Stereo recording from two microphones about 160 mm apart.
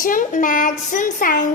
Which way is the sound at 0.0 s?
55° left (ahead or behind).